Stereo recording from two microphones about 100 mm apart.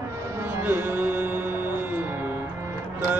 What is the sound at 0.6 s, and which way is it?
Music, 20° right (ahead or behind).